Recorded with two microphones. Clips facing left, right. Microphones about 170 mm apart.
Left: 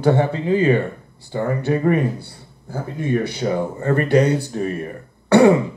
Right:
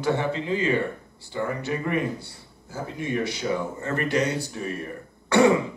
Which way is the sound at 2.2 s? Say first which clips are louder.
Left 4 dB; 60° left (ahead or behind).